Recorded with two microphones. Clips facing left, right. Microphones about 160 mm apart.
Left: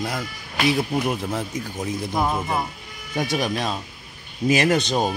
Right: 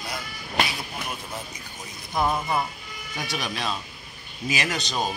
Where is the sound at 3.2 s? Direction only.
50° left (ahead or behind).